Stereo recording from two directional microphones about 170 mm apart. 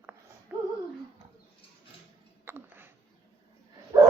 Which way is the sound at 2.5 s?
15° right (ahead or behind).